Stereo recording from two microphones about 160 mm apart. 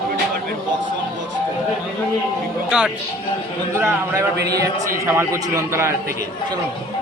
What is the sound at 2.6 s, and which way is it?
Speech, 5° right (ahead or behind).